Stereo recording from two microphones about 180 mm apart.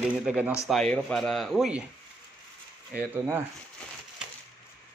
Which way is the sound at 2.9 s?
10° right (ahead or behind).